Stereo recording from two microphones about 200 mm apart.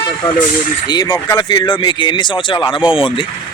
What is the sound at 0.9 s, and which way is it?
Speech, 20° left (ahead or behind).